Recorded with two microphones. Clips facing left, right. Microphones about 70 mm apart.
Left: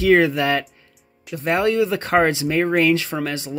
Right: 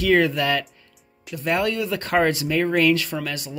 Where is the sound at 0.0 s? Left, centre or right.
Centre.